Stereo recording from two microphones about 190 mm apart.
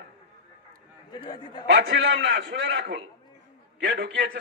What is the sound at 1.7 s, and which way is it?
A man's voice, 75° right (ahead or behind).